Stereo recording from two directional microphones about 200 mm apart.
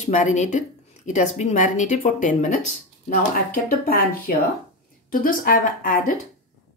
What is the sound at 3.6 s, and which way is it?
A woman's voice, 45° left (ahead or behind).